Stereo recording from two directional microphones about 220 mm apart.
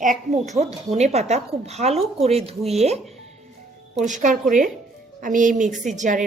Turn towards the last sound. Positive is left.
turn(degrees=-35)  # may be behind; listen again after turning